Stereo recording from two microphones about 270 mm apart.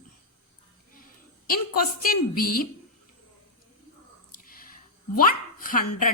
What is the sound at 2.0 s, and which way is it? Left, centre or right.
Speech, left.